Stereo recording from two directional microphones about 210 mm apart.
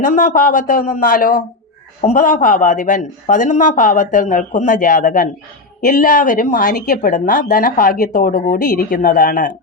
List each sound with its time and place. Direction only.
0.0 s speech: 40° left (ahead or behind)